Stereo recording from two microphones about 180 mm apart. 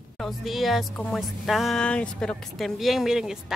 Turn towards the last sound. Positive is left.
turn(degrees=-5)  # may be behind; listen again after turning